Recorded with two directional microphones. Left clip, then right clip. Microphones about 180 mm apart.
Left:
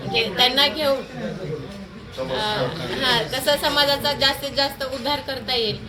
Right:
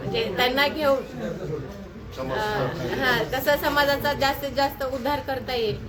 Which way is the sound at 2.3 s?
10° right (ahead or behind).